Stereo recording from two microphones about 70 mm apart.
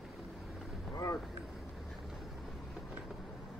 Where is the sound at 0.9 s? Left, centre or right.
Left.